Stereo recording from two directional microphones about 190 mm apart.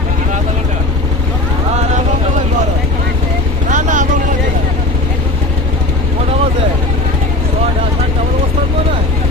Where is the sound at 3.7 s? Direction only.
40° right (ahead or behind).